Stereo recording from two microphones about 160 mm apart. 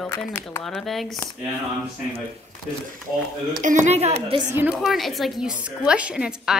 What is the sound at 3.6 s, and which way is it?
Speech, 50° right (ahead or behind).